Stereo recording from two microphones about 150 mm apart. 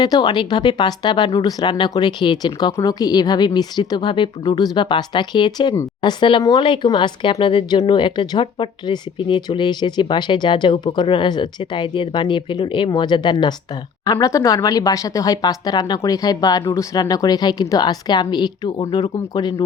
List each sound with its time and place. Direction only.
0.0 s speech: 25° left (ahead or behind)